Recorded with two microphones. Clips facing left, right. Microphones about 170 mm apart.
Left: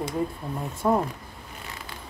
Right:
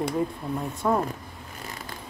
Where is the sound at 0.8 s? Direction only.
15° left (ahead or behind).